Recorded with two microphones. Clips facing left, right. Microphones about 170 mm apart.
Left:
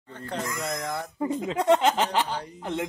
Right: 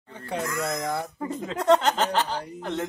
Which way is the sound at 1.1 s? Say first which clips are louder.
Left 4 dB; 15° left (ahead or behind).